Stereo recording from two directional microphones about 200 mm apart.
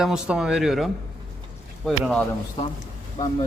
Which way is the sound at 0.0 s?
5° right (ahead or behind).